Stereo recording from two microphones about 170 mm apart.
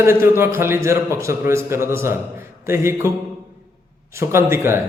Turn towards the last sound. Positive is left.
turn(degrees=-15)  # may be behind; listen again after turning